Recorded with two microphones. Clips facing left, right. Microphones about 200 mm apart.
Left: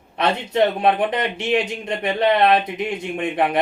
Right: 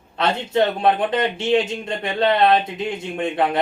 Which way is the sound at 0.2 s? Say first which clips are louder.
Left 1 dB; 20° left (ahead or behind).